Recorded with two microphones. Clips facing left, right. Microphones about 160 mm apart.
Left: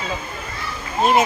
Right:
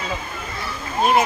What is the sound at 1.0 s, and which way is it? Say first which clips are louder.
Speech: left 1 dB; 20° left (ahead or behind).